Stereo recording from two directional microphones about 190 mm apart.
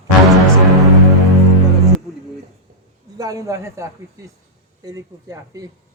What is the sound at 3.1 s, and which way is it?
Speech, 15° right (ahead or behind).